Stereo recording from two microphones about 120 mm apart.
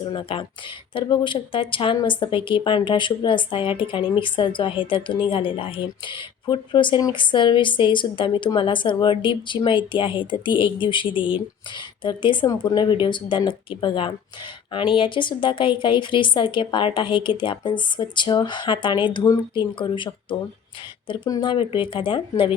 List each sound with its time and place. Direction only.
0.1 s speech: 45° left (ahead or behind)
21.2 s speech: 30° left (ahead or behind)
21.5 s speech: 45° left (ahead or behind)